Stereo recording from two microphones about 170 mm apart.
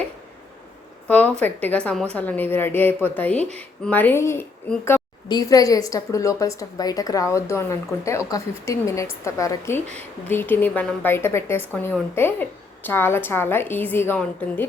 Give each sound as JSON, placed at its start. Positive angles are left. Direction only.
{"t": 1.0, "sound": "a woman's voice", "side_deg": 10}